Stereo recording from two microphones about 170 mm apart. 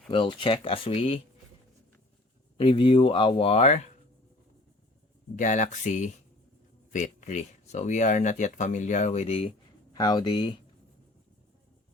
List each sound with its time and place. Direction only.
0.1 s speech: 30° left (ahead or behind)
2.6 s speech: 30° left (ahead or behind)
5.4 s speech: 45° left (ahead or behind)
9.9 s speech: 25° left (ahead or behind)